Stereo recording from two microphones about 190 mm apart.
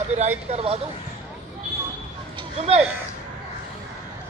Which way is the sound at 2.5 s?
35° right (ahead or behind).